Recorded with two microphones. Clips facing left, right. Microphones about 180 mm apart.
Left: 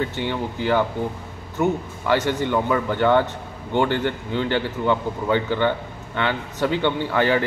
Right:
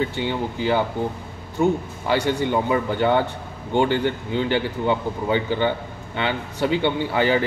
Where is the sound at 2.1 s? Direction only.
15° right (ahead or behind).